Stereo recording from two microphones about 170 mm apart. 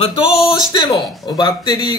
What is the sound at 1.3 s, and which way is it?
Speech, 25° left (ahead or behind).